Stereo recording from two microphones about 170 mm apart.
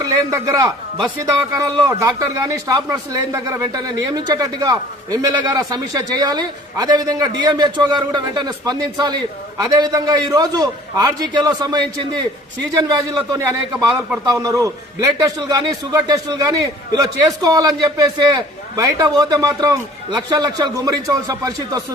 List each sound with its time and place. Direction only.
0.0 s a man's voice: 20° right (ahead or behind)
13.0 s speech: 20° right (ahead or behind)